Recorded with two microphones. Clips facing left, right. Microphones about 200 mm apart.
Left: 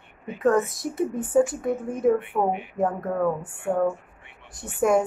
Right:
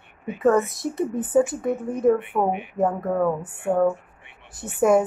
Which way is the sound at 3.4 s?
20° right (ahead or behind).